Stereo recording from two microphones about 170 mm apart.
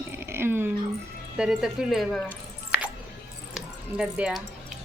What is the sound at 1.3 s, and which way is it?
Speech, 5° right (ahead or behind).